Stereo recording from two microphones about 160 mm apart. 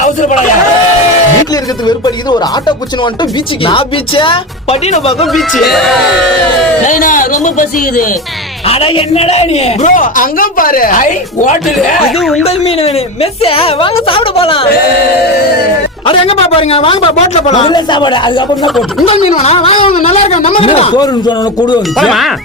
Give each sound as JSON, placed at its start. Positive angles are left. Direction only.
{"t": 0.0, "sound": "speech", "side_deg": 50}
{"t": 3.7, "sound": "a man's voice", "side_deg": 30}
{"t": 5.2, "sound": "speech", "side_deg": 0}
{"t": 6.8, "sound": "a man's voice", "side_deg": 55}
{"t": 8.6, "sound": "a man's voice", "side_deg": 35}
{"t": 12.4, "sound": "a man's voice", "side_deg": 40}
{"t": 16.0, "sound": "a man's voice", "side_deg": 35}
{"t": 17.7, "sound": "a man's voice", "side_deg": 30}
{"t": 21.9, "sound": "speech", "side_deg": 0}